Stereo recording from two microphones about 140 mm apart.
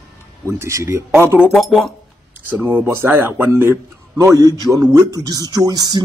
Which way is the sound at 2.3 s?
15° right (ahead or behind).